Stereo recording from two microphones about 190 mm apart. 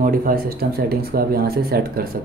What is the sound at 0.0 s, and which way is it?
Speech, 50° right (ahead or behind).